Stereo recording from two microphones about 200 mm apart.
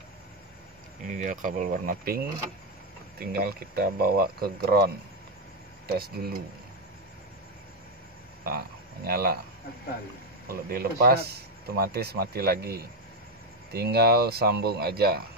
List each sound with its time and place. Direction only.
1.0 s speech: 40° right (ahead or behind)
8.5 s speech: 50° right (ahead or behind)
10.7 s speech: 50° right (ahead or behind)